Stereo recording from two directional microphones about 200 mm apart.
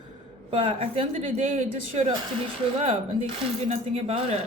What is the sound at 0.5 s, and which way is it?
Speech, 25° right (ahead or behind).